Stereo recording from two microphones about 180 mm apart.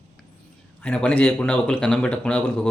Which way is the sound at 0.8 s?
5° left (ahead or behind).